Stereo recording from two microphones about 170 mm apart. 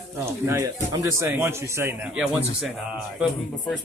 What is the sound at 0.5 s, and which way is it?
A man's voice, 20° right (ahead or behind).